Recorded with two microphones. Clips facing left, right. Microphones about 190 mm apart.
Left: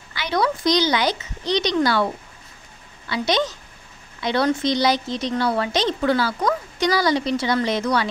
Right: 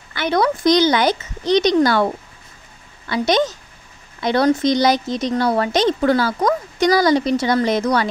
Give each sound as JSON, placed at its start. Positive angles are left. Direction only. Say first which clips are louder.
{"t": 0.1, "sound": "a woman's voice", "louder": "right 4 dB", "side_deg": -55}